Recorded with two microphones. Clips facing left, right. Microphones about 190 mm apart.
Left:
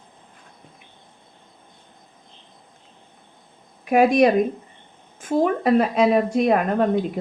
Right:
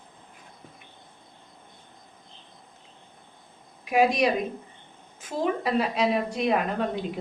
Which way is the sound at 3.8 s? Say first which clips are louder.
Left 6 dB; 50° left (ahead or behind).